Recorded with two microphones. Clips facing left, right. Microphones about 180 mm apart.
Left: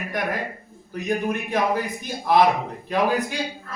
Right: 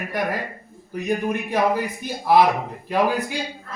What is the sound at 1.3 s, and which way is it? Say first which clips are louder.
A man's voice: right 3 dB; 10° right (ahead or behind).